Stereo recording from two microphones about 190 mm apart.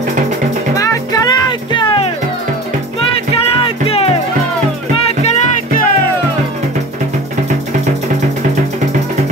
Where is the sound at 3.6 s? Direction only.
30° left (ahead or behind).